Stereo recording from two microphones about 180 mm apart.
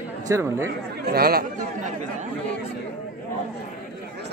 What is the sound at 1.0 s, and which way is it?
Speech, 60° right (ahead or behind).